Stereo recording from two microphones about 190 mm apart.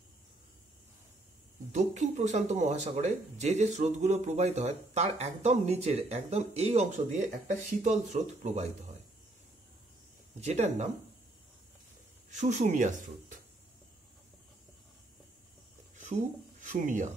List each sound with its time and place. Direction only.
1.7 s speech: 40° right (ahead or behind)
10.4 s speech: 35° right (ahead or behind)
12.3 s speech: 40° right (ahead or behind)
16.6 s speech: 40° right (ahead or behind)